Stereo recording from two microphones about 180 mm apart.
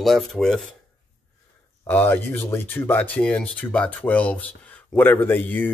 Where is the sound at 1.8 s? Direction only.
10° left (ahead or behind).